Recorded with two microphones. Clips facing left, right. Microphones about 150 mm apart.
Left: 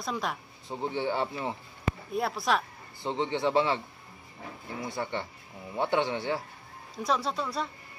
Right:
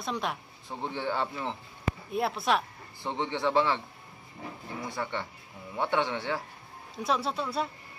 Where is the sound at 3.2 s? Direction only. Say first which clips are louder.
Even; 15° left (ahead or behind).